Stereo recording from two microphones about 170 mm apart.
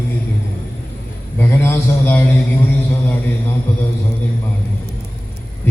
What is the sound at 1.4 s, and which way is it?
Speech, 15° left (ahead or behind).